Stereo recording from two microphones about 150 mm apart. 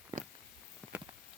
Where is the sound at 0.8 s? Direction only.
10° left (ahead or behind).